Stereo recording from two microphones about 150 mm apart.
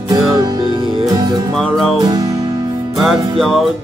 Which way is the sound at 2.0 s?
25° right (ahead or behind).